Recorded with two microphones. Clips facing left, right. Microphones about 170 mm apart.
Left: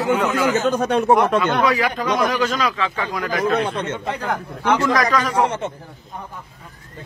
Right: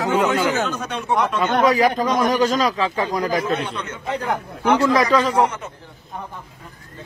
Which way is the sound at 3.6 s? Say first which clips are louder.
Left 6 dB; 30° left (ahead or behind).